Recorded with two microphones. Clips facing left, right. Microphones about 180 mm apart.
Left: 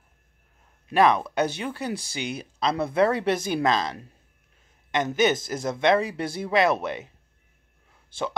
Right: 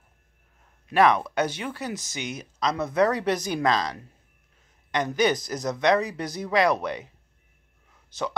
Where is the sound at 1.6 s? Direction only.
30° left (ahead or behind).